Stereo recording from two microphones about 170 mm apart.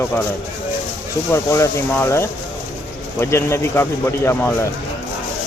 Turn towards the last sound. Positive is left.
turn(degrees=15)  # may be behind; listen again after turning